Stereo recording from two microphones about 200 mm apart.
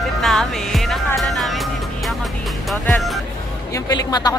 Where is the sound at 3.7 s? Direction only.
20° left (ahead or behind).